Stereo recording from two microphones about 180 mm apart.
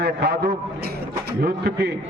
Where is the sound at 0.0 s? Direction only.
65° right (ahead or behind).